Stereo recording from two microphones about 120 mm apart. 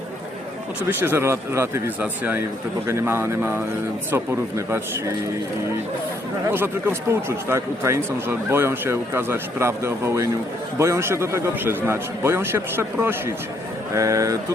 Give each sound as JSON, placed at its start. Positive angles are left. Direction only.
{"t": 0.8, "sound": "speech", "side_deg": -15}
{"t": 6.5, "sound": "speech", "side_deg": -20}